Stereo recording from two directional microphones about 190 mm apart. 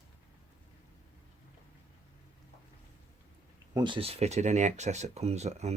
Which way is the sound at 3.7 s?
25° right (ahead or behind).